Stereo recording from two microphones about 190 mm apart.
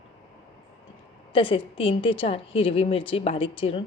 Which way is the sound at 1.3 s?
25° left (ahead or behind).